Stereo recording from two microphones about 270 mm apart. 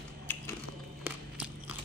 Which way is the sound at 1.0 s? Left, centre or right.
Centre.